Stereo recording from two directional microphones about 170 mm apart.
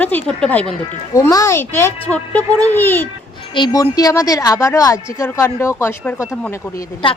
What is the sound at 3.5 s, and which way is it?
Speech, 25° left (ahead or behind).